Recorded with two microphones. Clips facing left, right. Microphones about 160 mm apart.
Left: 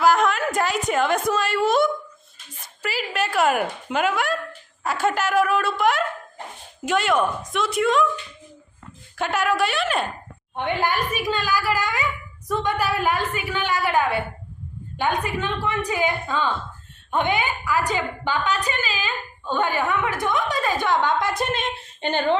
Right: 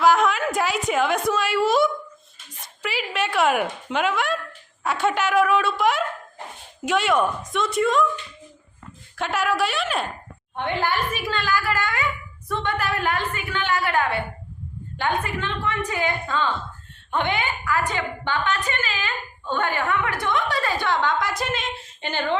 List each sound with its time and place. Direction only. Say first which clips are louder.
0.0 s a sound: even; centre (ahead or behind)
2.8 s speech: even; centre (ahead or behind)
9.1 s speech: left 1 dB; centre (ahead or behind)
10.5 s a woman's voice: left 1 dB; 15° left (ahead or behind)
15.2 s a woman's voice: left 2 dB; 15° left (ahead or behind)